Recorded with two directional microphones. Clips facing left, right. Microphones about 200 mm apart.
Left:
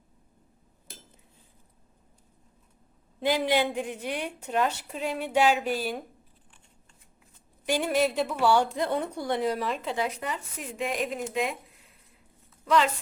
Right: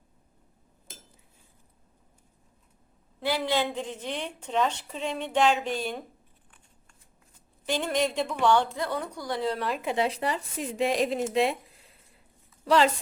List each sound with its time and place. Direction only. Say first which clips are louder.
3.2 s a woman's voice: left 2 dB; 15° left (ahead or behind)
7.7 s a woman's voice: left 2 dB; 10° left (ahead or behind)
9.6 s speech: even; centre (ahead or behind)
9.8 s speech: right 3 dB; 25° right (ahead or behind)